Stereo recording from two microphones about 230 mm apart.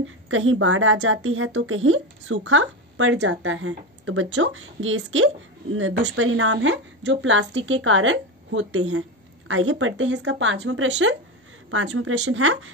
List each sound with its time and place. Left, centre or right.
0.0 s speech: right